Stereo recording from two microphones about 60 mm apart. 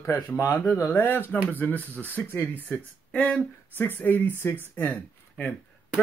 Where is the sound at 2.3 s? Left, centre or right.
Left.